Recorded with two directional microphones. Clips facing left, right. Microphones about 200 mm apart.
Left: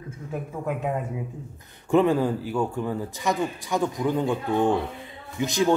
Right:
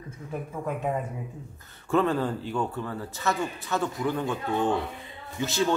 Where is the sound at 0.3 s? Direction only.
5° left (ahead or behind).